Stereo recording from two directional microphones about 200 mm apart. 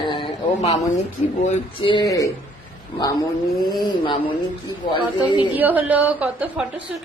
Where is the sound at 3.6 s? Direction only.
20° left (ahead or behind).